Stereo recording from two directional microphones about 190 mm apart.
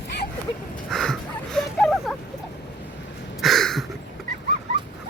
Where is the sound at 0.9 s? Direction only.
Centre (ahead or behind).